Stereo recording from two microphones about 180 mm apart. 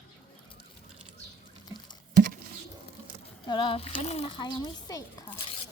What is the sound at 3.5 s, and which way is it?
A child's voice, 30° left (ahead or behind).